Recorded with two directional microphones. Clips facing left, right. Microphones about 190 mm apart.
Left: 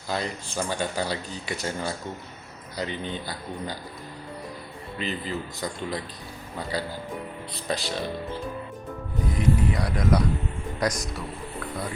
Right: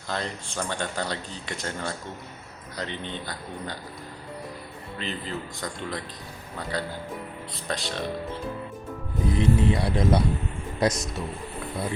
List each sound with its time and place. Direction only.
0.1 s speech: 5° left (ahead or behind)
4.9 s speech: 5° left (ahead or behind)
9.4 s speech: 25° right (ahead or behind)